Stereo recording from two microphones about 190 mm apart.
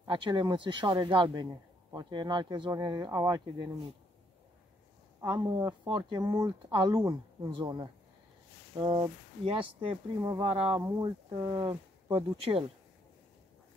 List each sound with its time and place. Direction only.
0.0 s speech: 25° right (ahead or behind)
5.2 s speech: 20° right (ahead or behind)
10.8 s speech: 15° right (ahead or behind)